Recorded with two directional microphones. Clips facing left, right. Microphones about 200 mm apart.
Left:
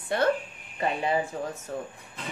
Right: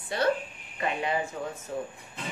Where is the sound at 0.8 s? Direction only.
30° left (ahead or behind).